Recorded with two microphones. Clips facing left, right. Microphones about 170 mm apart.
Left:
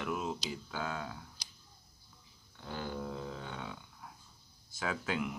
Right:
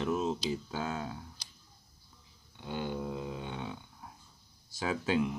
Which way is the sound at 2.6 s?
15° right (ahead or behind).